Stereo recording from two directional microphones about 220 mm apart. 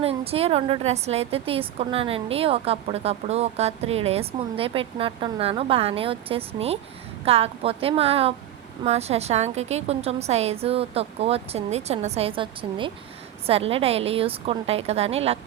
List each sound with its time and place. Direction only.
0.0 s a woman's voice: 25° right (ahead or behind)